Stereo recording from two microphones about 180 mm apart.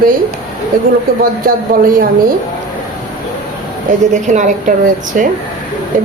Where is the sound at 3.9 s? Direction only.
45° right (ahead or behind).